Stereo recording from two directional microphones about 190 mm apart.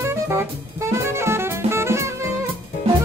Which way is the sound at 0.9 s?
15° right (ahead or behind).